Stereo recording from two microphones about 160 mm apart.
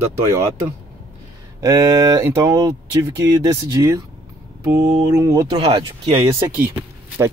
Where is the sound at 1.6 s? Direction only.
20° right (ahead or behind).